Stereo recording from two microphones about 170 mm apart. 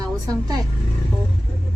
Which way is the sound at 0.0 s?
20° right (ahead or behind).